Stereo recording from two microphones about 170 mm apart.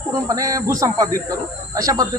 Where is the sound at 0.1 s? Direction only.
20° right (ahead or behind).